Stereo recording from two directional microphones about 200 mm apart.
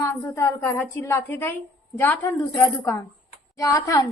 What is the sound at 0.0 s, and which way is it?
A woman's voice, 15° left (ahead or behind).